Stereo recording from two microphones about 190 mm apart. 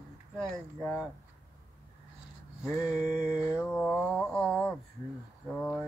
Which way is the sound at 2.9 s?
40° right (ahead or behind).